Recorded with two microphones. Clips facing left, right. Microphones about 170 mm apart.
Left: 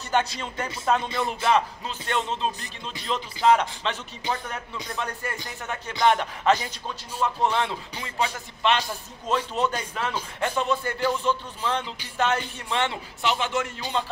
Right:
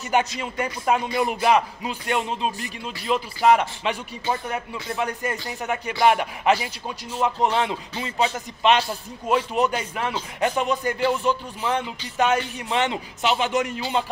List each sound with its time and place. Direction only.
0.1 s speech: 15° right (ahead or behind)